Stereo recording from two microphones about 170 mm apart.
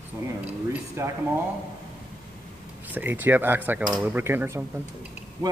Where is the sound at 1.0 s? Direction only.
15° right (ahead or behind).